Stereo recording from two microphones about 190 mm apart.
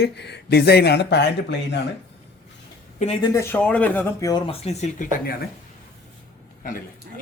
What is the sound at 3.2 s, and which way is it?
Speech, 20° left (ahead or behind).